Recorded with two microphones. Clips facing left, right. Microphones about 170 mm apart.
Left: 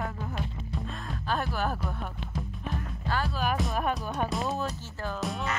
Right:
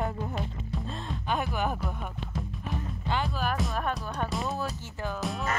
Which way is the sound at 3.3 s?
5° left (ahead or behind).